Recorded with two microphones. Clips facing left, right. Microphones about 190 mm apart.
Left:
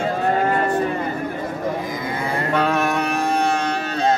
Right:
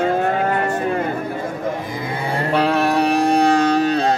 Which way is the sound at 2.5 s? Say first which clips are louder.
Right 4 dB; 30° right (ahead or behind).